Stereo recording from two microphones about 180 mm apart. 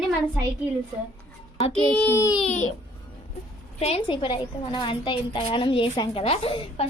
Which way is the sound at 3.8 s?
30° left (ahead or behind).